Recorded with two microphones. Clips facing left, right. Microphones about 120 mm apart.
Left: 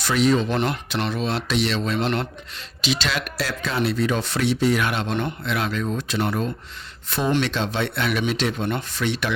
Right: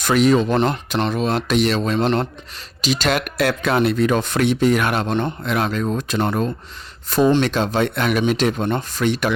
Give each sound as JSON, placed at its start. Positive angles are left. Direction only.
{"t": 0.0, "sound": "speech", "side_deg": -50}